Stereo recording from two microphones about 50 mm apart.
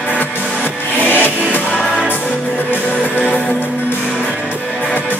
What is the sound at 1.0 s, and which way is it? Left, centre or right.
Music, left.